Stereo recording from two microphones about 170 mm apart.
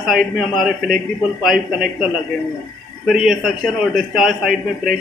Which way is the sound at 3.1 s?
5° right (ahead or behind).